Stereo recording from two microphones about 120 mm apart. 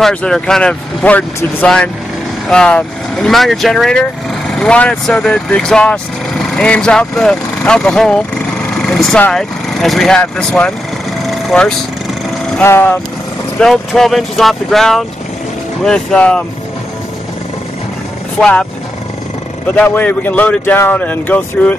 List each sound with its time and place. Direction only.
0.0 s speech: 5° left (ahead or behind)
11.2 s vehicle: 5° left (ahead or behind)
12.6 s speech: 20° left (ahead or behind)
13.6 s speech: 5° left (ahead or behind)
18.4 s speech: 10° left (ahead or behind)
19.7 s speech: 15° left (ahead or behind)